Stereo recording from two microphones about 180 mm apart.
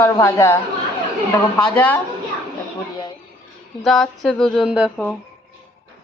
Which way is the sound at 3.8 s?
Centre (ahead or behind).